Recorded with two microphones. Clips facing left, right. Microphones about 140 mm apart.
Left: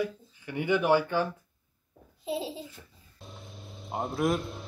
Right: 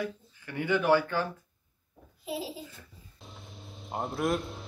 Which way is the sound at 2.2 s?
25° left (ahead or behind).